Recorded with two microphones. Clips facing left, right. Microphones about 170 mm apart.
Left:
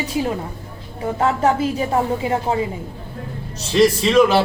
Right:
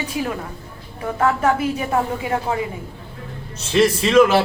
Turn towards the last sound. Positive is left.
turn(degrees=0)  # may be behind; listen again after turning